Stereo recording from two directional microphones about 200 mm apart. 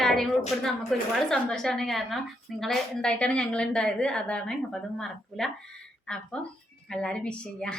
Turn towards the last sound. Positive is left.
turn(degrees=5)  # may be behind; listen again after turning